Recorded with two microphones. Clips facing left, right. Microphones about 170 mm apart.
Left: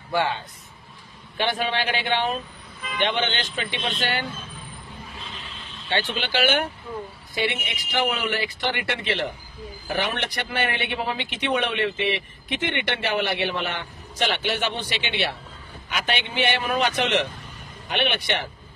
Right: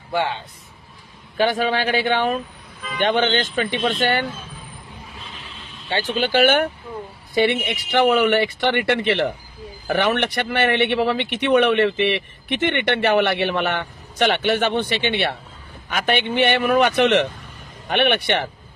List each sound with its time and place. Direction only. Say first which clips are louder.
1.4 s speech: right 6 dB; 40° right (ahead or behind)
5.9 s a man's voice: right 5 dB; 40° right (ahead or behind); by 18.5 s 60° right (ahead or behind)